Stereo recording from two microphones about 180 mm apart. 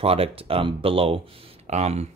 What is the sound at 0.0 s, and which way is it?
Speech, 35° right (ahead or behind).